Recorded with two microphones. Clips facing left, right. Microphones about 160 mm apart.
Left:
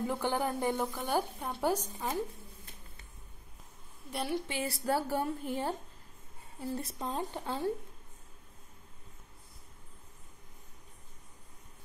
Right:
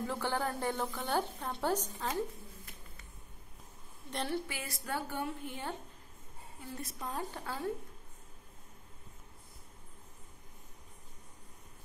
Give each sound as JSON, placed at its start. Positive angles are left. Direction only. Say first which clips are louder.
{"t": 0.0, "sound": "a woman's voice", "louder": "left 3 dB", "side_deg": 15}
{"t": 4.1, "sound": "a woman's voice", "louder": "left 2 dB", "side_deg": 10}
{"t": 4.5, "sound": "a woman's voice", "louder": "left 8 dB", "side_deg": 30}